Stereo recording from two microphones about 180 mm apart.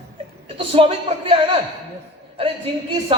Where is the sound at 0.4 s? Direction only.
30° right (ahead or behind).